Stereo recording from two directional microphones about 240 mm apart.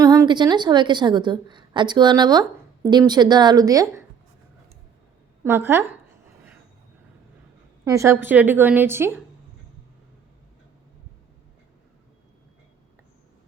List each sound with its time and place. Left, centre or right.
0.0 s a woman's voice: centre
5.4 s a woman's voice: centre
7.9 s a woman's voice: centre